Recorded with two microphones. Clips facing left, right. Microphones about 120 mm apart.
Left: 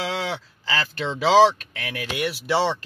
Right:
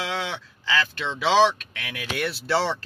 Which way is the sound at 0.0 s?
35° left (ahead or behind).